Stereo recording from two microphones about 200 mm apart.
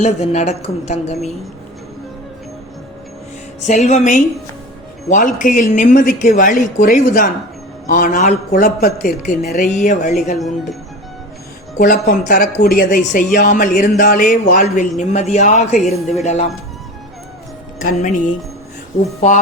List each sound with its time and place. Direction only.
0.0 s a man's voice: 35° left (ahead or behind)
3.7 s a man's voice: 35° left (ahead or behind)
10.3 s speech: centre (ahead or behind)
11.8 s a man's voice: 45° left (ahead or behind)
18.0 s a man's voice: 40° left (ahead or behind)